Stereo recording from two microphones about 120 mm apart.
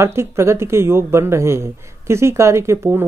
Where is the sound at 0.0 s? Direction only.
20° right (ahead or behind).